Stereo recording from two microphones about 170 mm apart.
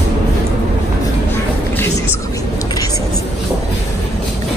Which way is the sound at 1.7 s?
10° left (ahead or behind).